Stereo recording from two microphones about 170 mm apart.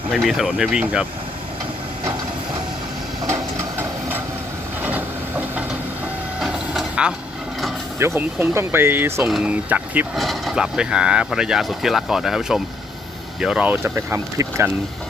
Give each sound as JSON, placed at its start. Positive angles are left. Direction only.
{"t": 0.1, "sound": "speech", "side_deg": 0}
{"t": 4.8, "sound": "a sound", "side_deg": -10}
{"t": 6.4, "sound": "mechanisms", "side_deg": -5}
{"t": 7.9, "sound": "speech", "side_deg": -15}